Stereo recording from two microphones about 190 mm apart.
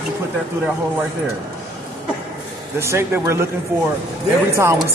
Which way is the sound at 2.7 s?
15° right (ahead or behind).